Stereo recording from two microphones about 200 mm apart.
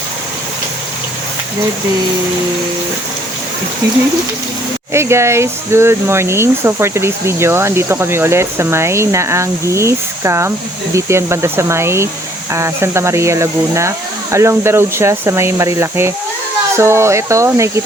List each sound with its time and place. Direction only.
4.9 s speech: 15° right (ahead or behind)